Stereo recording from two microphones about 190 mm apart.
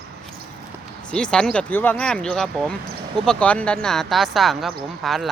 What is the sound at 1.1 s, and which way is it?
Speech, 5° left (ahead or behind).